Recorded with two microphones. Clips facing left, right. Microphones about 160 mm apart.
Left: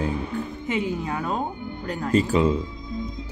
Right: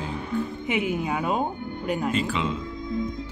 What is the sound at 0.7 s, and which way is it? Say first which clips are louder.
Speech: even; 15° right (ahead or behind).